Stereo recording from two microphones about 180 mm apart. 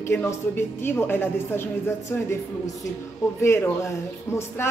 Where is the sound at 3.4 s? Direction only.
15° left (ahead or behind).